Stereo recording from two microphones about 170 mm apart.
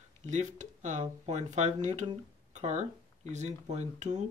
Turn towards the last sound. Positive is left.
turn(degrees=-45)  # may be behind; listen again after turning